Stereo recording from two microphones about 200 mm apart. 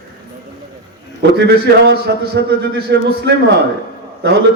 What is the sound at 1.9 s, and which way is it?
A man's voice, 50° right (ahead or behind).